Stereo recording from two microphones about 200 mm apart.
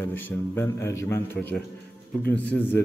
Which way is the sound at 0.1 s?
10° left (ahead or behind).